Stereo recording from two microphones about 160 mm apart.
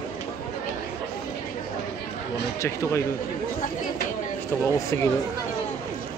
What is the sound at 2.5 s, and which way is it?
Speech, 20° left (ahead or behind).